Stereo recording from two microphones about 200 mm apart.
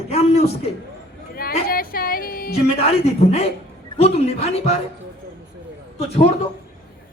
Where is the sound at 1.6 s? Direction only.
45° left (ahead or behind).